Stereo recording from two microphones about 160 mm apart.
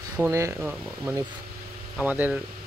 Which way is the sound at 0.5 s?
10° right (ahead or behind).